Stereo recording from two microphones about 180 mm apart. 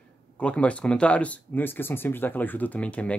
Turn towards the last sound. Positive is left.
turn(degrees=5)  # may be behind; listen again after turning